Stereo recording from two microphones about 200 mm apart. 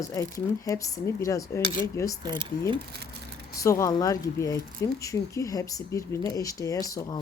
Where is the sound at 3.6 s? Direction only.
15° left (ahead or behind).